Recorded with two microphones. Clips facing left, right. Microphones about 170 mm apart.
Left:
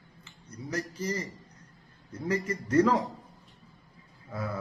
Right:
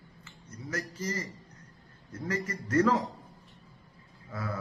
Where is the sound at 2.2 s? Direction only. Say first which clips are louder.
Left 4 dB; 15° left (ahead or behind).